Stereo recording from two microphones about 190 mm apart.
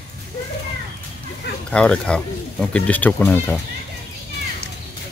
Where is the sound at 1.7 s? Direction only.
5° left (ahead or behind).